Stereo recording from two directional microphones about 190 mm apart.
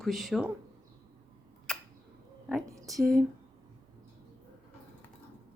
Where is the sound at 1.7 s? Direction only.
5° left (ahead or behind).